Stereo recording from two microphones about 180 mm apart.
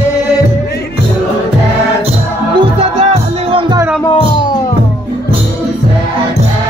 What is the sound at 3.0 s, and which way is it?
Music, 30° right (ahead or behind).